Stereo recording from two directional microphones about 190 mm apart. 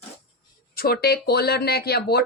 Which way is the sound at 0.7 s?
55° left (ahead or behind).